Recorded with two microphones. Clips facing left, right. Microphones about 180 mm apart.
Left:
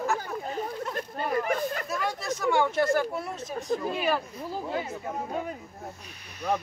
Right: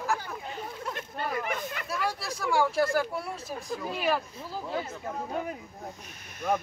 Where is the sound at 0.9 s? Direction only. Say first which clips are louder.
Left 5 dB; 40° left (ahead or behind).